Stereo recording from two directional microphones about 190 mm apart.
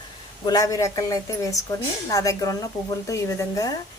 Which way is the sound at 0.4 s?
20° left (ahead or behind).